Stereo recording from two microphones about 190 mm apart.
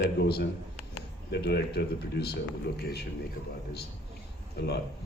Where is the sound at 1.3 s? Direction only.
60° left (ahead or behind).